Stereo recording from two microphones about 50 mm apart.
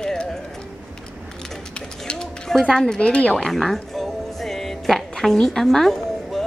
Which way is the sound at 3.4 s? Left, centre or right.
Centre.